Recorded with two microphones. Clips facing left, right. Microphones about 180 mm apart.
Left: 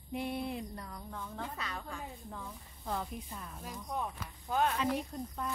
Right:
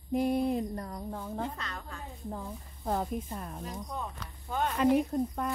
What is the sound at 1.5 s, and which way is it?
Speech, 10° left (ahead or behind).